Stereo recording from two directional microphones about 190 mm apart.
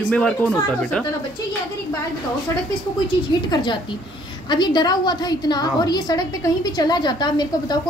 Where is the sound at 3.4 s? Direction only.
25° left (ahead or behind).